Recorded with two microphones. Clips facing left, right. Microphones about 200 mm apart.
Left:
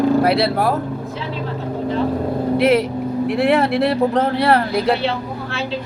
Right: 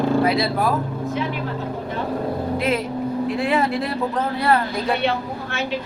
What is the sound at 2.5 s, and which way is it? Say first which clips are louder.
Speech: left 9 dB; 70° left (ahead or behind).